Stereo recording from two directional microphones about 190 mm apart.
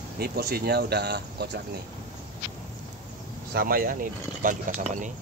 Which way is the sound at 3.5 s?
50° right (ahead or behind).